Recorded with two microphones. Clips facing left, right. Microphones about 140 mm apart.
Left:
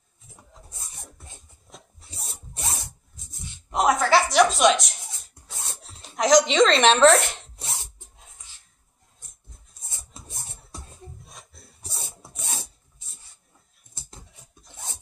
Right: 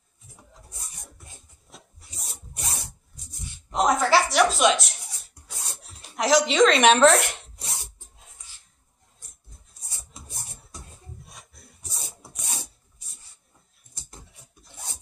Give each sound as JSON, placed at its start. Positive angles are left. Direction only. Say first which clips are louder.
{"t": 2.0, "sound": "filing", "louder": "left 2 dB", "side_deg": 30}
{"t": 3.3, "sound": "a sound", "louder": "even", "side_deg": 20}
{"t": 3.7, "sound": "a sound", "louder": "left 1 dB", "side_deg": 0}
{"t": 6.1, "sound": "a woman's voice", "louder": "left 2 dB", "side_deg": -5}
{"t": 7.1, "sound": "zipper", "louder": "left 2 dB", "side_deg": 25}
{"t": 9.8, "sound": "music", "louder": "left 1 dB", "side_deg": 20}
{"t": 12.1, "sound": "filing", "louder": "left 2 dB", "side_deg": 25}